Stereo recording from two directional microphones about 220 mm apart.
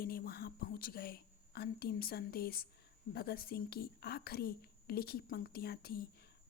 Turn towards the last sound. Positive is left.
turn(degrees=45)  # may be behind; listen again after turning